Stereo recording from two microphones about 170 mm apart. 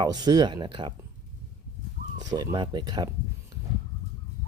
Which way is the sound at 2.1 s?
20° right (ahead or behind).